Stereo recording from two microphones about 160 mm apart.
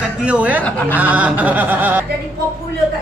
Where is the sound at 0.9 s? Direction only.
10° right (ahead or behind).